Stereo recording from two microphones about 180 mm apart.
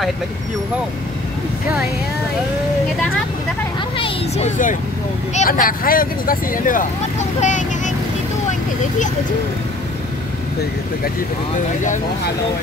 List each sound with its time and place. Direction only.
5.3 s speech: 45° left (ahead or behind)